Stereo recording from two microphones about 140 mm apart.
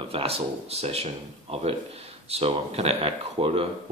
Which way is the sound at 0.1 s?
45° right (ahead or behind).